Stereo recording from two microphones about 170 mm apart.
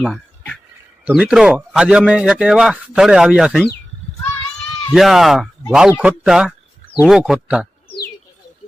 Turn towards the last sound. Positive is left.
turn(degrees=-5)  # may be behind; listen again after turning